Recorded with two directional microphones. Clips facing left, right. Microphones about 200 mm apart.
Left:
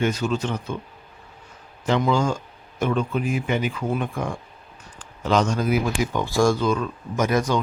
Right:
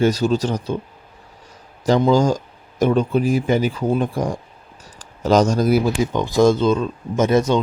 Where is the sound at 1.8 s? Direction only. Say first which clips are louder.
Right 6 dB; 35° right (ahead or behind).